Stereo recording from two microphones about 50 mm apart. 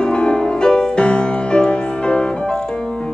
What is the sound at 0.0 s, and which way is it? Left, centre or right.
Music, centre.